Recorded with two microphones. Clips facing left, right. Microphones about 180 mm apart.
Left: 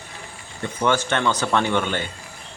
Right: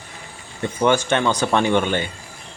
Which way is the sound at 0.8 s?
15° right (ahead or behind).